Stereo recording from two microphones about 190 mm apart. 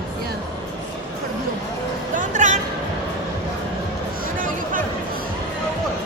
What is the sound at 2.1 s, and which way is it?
Speech, 40° right (ahead or behind).